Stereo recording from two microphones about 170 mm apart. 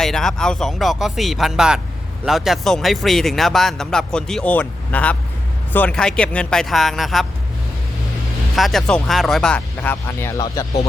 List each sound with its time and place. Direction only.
0.0 s speech: centre (ahead or behind)
8.5 s speech: centre (ahead or behind)
9.6 s speech: 15° left (ahead or behind)